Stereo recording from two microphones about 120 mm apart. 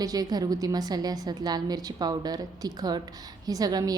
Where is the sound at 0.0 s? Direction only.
30° right (ahead or behind).